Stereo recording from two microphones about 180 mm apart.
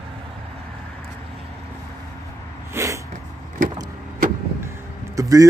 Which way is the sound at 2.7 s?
15° right (ahead or behind).